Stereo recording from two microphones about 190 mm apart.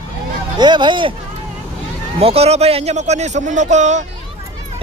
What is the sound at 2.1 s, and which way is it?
A man's voice, 30° right (ahead or behind).